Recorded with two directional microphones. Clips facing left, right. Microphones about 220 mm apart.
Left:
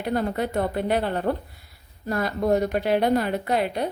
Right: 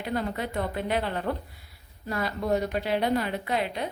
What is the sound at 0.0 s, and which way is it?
A woman's voice, 45° left (ahead or behind).